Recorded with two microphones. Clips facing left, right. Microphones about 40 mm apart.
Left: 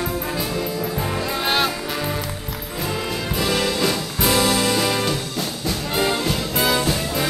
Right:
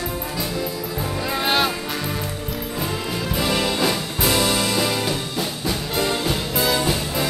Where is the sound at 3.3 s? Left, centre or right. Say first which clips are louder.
Even; centre.